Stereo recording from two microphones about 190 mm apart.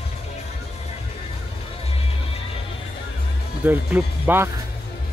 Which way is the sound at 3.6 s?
10° right (ahead or behind).